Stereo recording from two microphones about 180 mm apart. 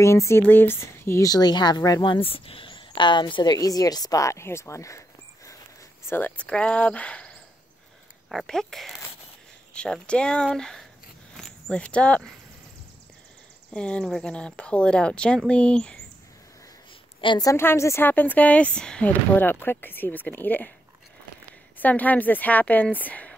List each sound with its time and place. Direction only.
0.0 s a woman's voice: 15° left (ahead or behind)
13.7 s speech: 5° left (ahead or behind)
17.2 s a woman's voice: 25° left (ahead or behind)
21.7 s a woman's voice: 10° left (ahead or behind)